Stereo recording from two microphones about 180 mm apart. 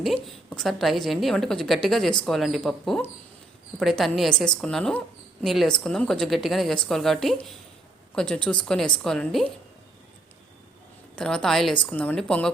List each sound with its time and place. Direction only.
0.0 s a woman's voice: 5° left (ahead or behind)
11.1 s a woman's voice: 5° left (ahead or behind)